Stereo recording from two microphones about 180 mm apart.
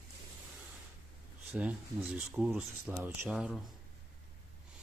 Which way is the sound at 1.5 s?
5° right (ahead or behind).